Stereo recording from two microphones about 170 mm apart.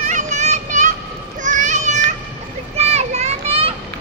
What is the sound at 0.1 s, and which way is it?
Children playing, 45° right (ahead or behind).